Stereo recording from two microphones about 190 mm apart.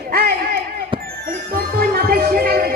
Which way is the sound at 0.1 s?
55° right (ahead or behind).